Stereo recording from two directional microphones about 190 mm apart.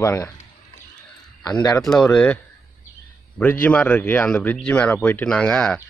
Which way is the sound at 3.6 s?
10° left (ahead or behind).